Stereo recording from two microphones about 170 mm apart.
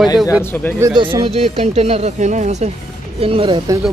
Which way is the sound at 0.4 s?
10° left (ahead or behind).